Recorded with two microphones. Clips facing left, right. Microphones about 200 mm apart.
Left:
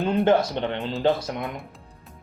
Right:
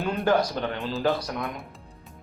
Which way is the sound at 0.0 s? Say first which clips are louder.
Left 3 dB; 25° left (ahead or behind).